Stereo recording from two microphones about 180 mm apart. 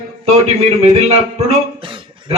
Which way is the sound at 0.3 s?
35° right (ahead or behind).